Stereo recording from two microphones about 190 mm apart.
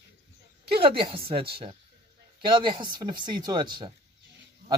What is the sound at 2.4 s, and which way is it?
Speech, 25° right (ahead or behind).